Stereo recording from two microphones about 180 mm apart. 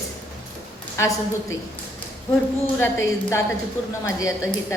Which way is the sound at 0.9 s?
15° left (ahead or behind).